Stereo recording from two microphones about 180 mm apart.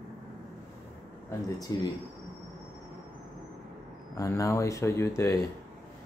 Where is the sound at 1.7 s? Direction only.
20° left (ahead or behind).